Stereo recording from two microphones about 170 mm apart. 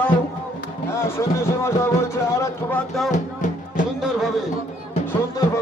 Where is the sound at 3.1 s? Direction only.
50° left (ahead or behind).